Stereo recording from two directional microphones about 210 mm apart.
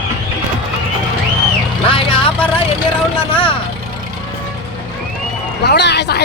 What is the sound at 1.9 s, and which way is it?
Vehicle, 25° left (ahead or behind).